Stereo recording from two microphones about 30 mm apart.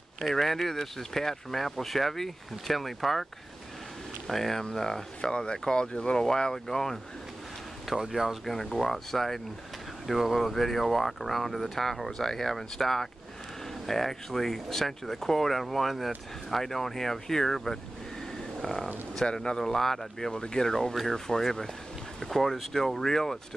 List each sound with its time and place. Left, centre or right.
0.2 s speech: centre
4.3 s speech: centre
5.2 s speech: left
6.1 s speech: centre
7.9 s speech: centre
8.5 s speech: centre
12.1 s speech: centre
19.3 s speech: centre
20.2 s speech: left